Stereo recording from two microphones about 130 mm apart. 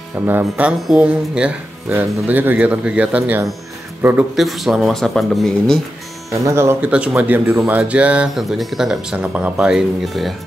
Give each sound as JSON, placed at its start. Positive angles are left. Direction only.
{"t": 0.1, "sound": "speech", "side_deg": -15}
{"t": 4.4, "sound": "speech", "side_deg": 0}
{"t": 6.4, "sound": "speech", "side_deg": -20}
{"t": 6.9, "sound": "speech", "side_deg": -10}